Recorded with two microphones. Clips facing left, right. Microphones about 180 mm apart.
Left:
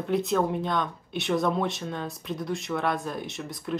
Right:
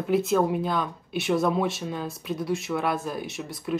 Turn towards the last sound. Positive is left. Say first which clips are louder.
# right 2 dB
turn(degrees=0)  # may be behind; listen again after turning